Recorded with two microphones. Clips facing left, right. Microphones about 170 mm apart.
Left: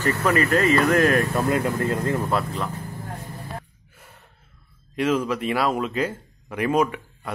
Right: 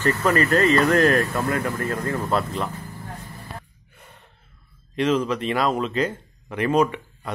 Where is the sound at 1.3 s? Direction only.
20° left (ahead or behind).